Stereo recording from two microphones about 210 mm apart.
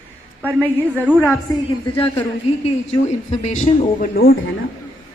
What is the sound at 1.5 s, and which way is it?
Speech, 15° left (ahead or behind).